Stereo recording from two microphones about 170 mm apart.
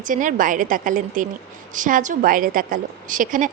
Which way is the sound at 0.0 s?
50° right (ahead or behind).